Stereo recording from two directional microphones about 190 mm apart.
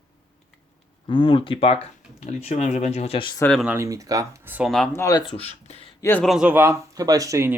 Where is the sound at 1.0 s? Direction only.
25° left (ahead or behind).